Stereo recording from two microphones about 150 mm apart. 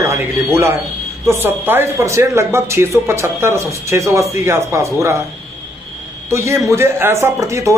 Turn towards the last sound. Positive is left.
turn(degrees=-20)  # may be behind; listen again after turning